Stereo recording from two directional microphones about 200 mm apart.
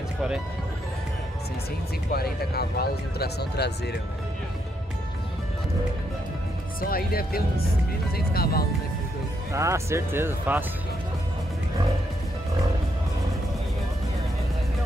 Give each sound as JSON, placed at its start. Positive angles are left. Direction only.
{"t": 2.1, "sound": "speech", "side_deg": 50}
{"t": 6.8, "sound": "speech", "side_deg": 50}
{"t": 9.5, "sound": "speech", "side_deg": -15}